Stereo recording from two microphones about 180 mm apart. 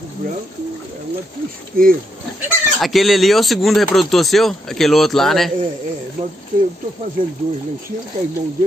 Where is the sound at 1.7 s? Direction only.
55° right (ahead or behind).